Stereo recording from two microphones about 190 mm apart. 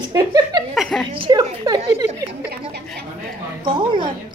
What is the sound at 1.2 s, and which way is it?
Speech, 20° right (ahead or behind).